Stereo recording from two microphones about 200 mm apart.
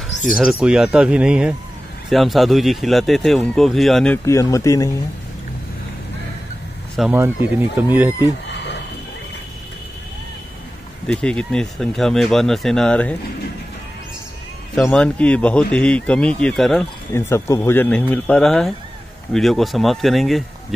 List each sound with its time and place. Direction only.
0.4 s speech: 5° right (ahead or behind); by 4.9 s 15° left (ahead or behind)
7.0 s speech: 10° right (ahead or behind)
8.5 s a sound: 60° left (ahead or behind)
11.1 s speech: 5° left (ahead or behind)
14.8 s speech: 5° left (ahead or behind)
17.1 s speech: 15° left (ahead or behind)